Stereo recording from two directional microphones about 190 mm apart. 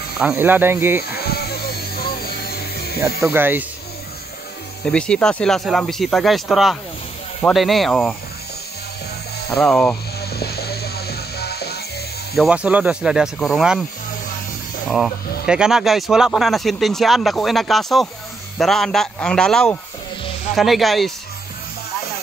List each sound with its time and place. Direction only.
0.2 s speech: 10° right (ahead or behind)
1.1 s music: 55° left (ahead or behind)
3.0 s speech: 15° right (ahead or behind)
4.8 s speech: 5° left (ahead or behind)
9.5 s speech: centre (ahead or behind)
10.3 s music: 55° left (ahead or behind)
12.4 s speech: 5° right (ahead or behind)
14.9 s speech: centre (ahead or behind)